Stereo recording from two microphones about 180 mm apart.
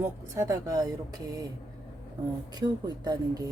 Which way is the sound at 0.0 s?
15° right (ahead or behind).